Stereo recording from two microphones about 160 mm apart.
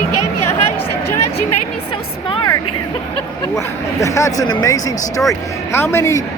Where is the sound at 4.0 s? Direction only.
20° left (ahead or behind).